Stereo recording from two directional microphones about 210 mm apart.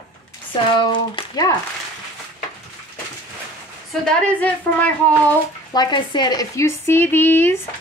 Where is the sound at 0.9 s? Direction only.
20° left (ahead or behind).